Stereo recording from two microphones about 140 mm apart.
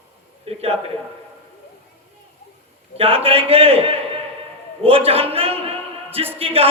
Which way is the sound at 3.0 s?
45° right (ahead or behind).